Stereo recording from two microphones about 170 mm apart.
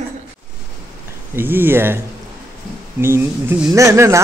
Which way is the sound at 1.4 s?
10° right (ahead or behind).